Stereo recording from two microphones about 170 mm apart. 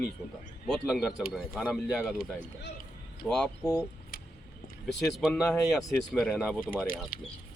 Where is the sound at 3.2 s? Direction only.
5° left (ahead or behind).